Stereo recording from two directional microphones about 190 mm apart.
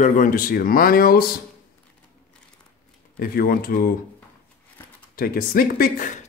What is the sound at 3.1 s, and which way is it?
Speech, 50° left (ahead or behind).